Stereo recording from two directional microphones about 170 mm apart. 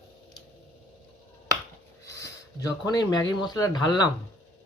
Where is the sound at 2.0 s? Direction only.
20° left (ahead or behind).